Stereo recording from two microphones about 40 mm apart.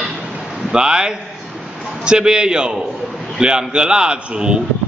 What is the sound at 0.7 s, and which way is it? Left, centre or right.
A man's voice, centre.